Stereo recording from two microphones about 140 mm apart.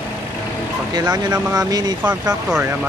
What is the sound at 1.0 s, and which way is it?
Speech, 30° right (ahead or behind).